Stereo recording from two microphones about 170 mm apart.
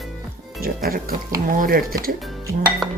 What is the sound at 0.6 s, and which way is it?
Speech, 60° right (ahead or behind).